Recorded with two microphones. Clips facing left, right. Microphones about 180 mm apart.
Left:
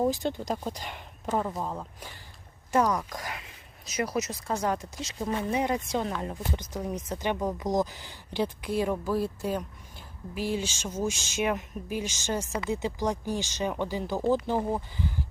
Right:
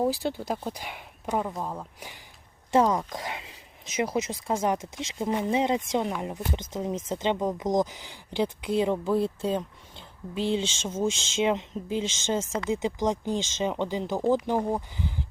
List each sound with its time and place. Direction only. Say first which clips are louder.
0.0 s speech: even; 10° right (ahead or behind)
2.7 s speech: right 3 dB; 25° right (ahead or behind)